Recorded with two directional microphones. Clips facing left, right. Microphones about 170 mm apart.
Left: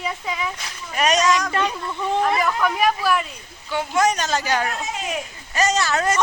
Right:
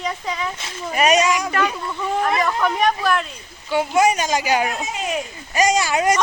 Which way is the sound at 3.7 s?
10° right (ahead or behind).